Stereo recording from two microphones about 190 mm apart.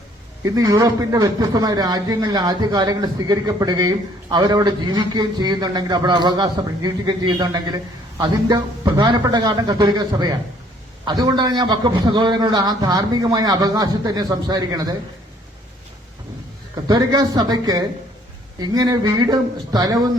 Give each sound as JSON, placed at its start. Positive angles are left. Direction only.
{"t": 0.4, "sound": "speech", "side_deg": -20}
{"t": 16.7, "sound": "speech", "side_deg": -20}